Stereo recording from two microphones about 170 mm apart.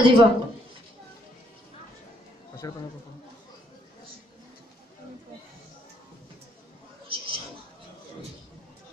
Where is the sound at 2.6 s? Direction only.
20° left (ahead or behind).